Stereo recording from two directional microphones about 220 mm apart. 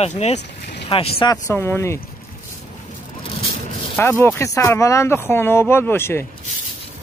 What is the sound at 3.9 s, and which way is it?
Speech, 10° left (ahead or behind).